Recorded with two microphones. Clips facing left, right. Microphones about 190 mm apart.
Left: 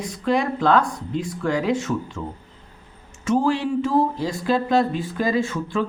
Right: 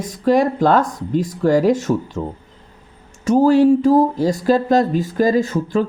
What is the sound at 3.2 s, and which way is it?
Speech, 40° right (ahead or behind).